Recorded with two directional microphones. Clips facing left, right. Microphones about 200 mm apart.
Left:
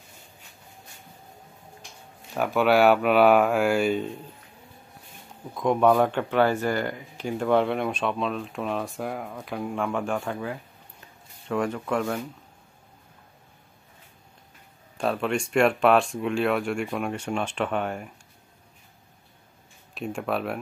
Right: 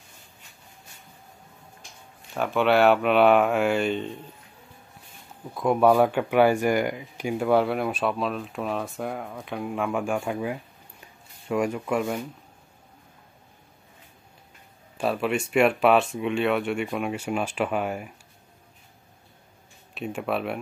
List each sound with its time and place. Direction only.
2.3 s speech: 5° left (ahead or behind)
5.5 s speech: 5° right (ahead or behind)
15.0 s speech: 5° right (ahead or behind)
19.9 s speech: centre (ahead or behind)